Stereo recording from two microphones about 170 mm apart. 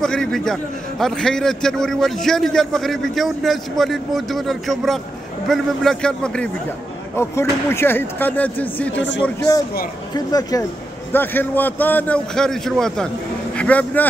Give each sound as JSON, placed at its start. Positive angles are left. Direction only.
{"t": 0.0, "sound": "a man's voice", "side_deg": 5}
{"t": 10.1, "sound": "speech", "side_deg": 20}
{"t": 11.1, "sound": "a man's voice", "side_deg": 10}